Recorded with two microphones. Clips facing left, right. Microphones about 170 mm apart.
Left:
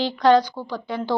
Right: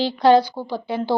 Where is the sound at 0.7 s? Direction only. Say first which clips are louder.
Right 3 dB; 30° right (ahead or behind).